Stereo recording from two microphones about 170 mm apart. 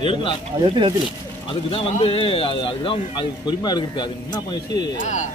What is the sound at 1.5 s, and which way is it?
Speech, 35° left (ahead or behind).